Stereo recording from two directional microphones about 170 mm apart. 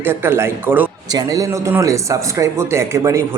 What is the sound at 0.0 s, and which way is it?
A man's voice, 15° right (ahead or behind).